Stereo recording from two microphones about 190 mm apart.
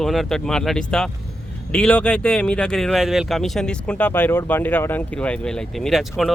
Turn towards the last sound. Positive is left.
turn(degrees=0)  # may be behind; listen again after turning